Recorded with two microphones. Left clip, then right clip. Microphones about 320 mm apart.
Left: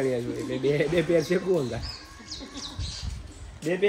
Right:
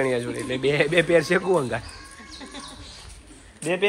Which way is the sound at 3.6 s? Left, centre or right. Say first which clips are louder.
Right 2 dB; centre.